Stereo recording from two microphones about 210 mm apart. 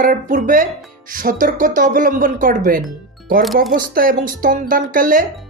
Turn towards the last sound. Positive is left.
turn(degrees=-40)  # may be behind; listen again after turning